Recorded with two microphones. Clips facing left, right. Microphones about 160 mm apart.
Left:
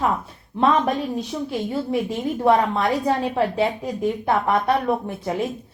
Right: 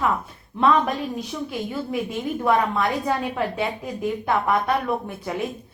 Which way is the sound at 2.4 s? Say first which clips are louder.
Left 3 dB; 35° left (ahead or behind).